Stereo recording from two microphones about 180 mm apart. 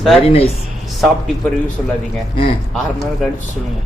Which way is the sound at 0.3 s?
35° left (ahead or behind).